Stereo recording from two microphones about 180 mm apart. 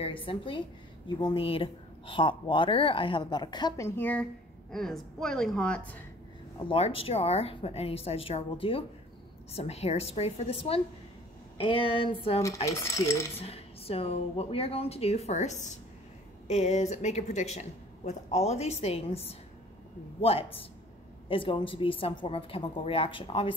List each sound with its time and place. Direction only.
0.0 s a woman's voice: 30° left (ahead or behind); by 5.9 s 5° left (ahead or behind)
7.0 s a woman's voice: 35° left (ahead or behind)
12.6 s speech: 15° left (ahead or behind)
13.4 s a woman's voice: 35° left (ahead or behind)